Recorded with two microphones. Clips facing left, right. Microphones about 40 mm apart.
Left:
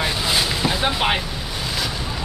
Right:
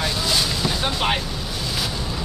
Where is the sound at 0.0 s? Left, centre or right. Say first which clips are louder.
Left 1 dB; left.